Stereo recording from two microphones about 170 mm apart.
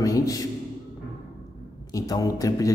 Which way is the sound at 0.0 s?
20° left (ahead or behind).